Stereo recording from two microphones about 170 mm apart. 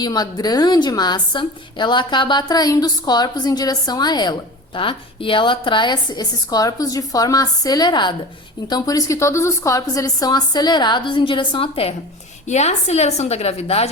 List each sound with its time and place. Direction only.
0.0 s a woman's voice: 25° left (ahead or behind)